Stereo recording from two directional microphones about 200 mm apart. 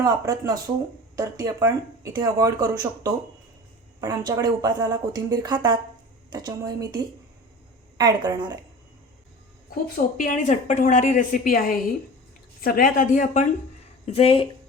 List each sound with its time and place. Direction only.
0.0 s speech: 20° right (ahead or behind)
9.9 s speech: 40° left (ahead or behind)